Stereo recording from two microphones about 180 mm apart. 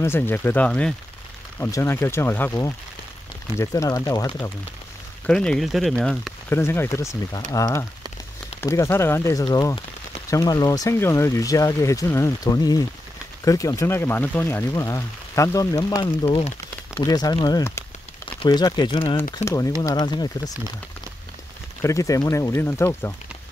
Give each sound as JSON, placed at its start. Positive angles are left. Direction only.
{"t": 0.0, "sound": "speech", "side_deg": 10}
{"t": 5.2, "sound": "speech", "side_deg": 5}
{"t": 6.5, "sound": "speech", "side_deg": 15}
{"t": 21.8, "sound": "speech", "side_deg": 15}